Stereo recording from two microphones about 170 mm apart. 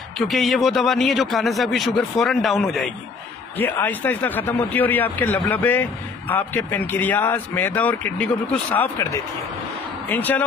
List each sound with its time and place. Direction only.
0.3 s a man's voice: centre (ahead or behind)